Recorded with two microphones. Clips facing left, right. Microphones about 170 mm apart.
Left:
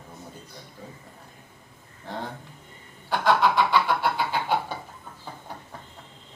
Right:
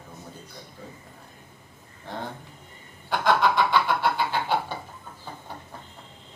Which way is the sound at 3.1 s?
5° left (ahead or behind).